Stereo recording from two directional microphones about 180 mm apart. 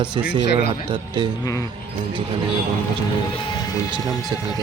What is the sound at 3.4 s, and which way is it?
Speech, 20° left (ahead or behind).